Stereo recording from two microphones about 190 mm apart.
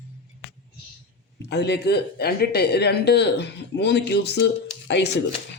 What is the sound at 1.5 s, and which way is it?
Speech, 60° left (ahead or behind).